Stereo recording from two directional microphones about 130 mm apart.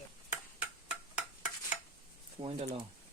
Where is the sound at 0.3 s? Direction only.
10° right (ahead or behind).